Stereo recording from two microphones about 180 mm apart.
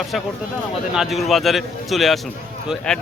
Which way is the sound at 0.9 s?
Centre (ahead or behind).